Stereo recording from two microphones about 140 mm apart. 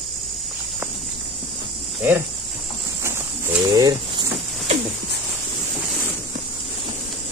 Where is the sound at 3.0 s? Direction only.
20° right (ahead or behind).